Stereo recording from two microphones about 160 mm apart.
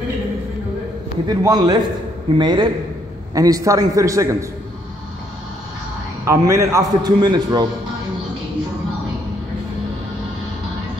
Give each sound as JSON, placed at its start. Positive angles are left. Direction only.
{"t": 1.2, "sound": "a man's voice", "side_deg": -25}
{"t": 6.2, "sound": "a man's voice", "side_deg": -20}